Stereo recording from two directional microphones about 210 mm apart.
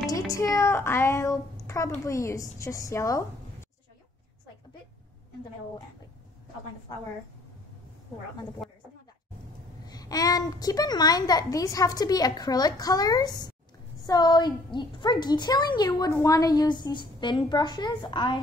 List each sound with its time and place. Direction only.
0.1 s a woman's voice: 15° left (ahead or behind)
8.6 s a sound: centre (ahead or behind)
9.8 s a child's voice: 20° left (ahead or behind)